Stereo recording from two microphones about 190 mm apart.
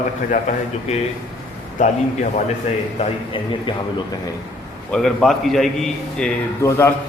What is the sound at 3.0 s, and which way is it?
Speech, 25° left (ahead or behind).